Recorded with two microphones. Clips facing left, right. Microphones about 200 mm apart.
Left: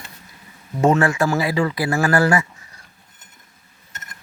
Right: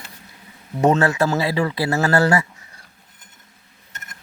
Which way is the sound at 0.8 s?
25° right (ahead or behind).